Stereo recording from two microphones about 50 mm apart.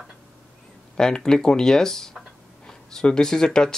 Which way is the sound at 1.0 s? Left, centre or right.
Centre.